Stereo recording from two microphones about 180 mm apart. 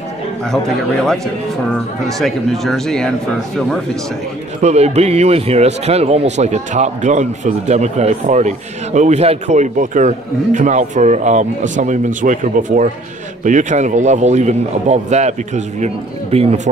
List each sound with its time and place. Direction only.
1.0 s speech: centre (ahead or behind)
4.6 s a man's voice: 40° right (ahead or behind)